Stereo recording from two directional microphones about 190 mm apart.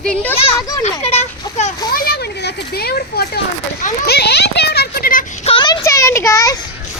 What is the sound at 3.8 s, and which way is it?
Children playing, 55° left (ahead or behind).